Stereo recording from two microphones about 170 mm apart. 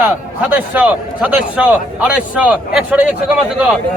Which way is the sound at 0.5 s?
10° right (ahead or behind).